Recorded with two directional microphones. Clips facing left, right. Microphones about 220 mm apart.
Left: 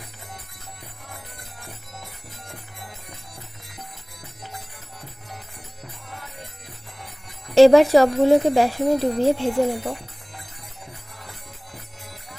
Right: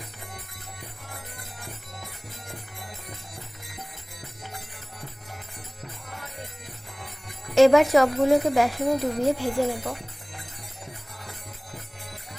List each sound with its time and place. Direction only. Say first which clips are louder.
7.5 s speech: left 4 dB; 35° left (ahead or behind)